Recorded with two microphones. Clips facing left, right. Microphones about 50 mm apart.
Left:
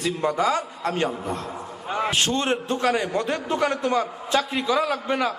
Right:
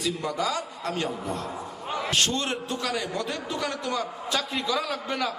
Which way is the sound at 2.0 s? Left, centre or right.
Left.